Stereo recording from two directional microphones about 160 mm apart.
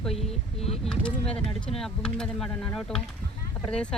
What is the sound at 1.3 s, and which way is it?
Speech, 35° left (ahead or behind).